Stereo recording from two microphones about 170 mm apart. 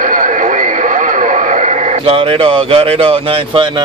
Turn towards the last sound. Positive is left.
turn(degrees=-35)  # may be behind; listen again after turning